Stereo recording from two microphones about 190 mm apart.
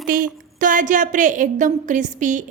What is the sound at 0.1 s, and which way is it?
A woman's voice, 45° right (ahead or behind).